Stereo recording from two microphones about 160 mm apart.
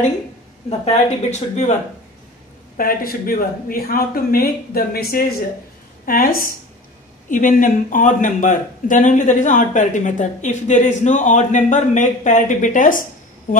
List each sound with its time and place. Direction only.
0.7 s speech: 45° left (ahead or behind)
2.8 s speech: 65° left (ahead or behind)